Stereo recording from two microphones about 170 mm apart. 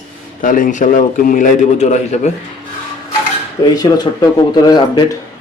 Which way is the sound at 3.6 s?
25° left (ahead or behind).